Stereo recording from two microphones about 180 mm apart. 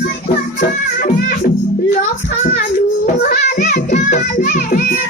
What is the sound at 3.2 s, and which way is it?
Music, 55° left (ahead or behind).